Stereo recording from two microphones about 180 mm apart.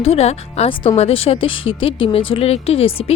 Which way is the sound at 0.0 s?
35° left (ahead or behind).